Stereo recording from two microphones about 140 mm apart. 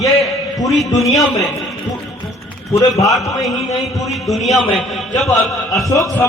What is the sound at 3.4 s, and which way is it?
A man's voice, centre (ahead or behind).